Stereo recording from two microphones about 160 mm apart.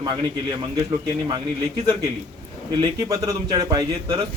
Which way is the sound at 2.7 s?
25° right (ahead or behind).